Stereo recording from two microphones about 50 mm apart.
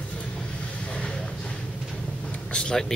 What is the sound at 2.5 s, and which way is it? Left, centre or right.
Vehicle, centre.